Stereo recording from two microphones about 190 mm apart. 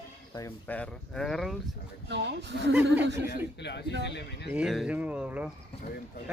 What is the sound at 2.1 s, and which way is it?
Speech, 65° right (ahead or behind).